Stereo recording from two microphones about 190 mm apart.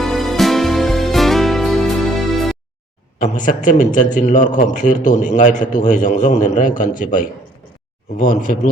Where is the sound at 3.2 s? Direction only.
40° left (ahead or behind).